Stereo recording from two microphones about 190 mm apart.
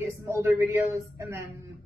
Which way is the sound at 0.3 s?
15° right (ahead or behind).